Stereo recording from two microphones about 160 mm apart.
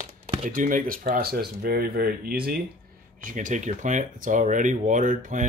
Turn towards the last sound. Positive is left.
turn(degrees=-55)  # may be behind; listen again after turning